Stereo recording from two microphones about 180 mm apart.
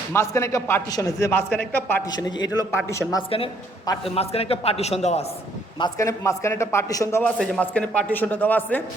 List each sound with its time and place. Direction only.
0.1 s a man's voice: 15° left (ahead or behind)
2.0 s a man's voice: 25° left (ahead or behind)
5.8 s a man's voice: 15° left (ahead or behind)